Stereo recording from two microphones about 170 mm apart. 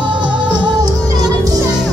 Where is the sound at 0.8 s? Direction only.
25° right (ahead or behind).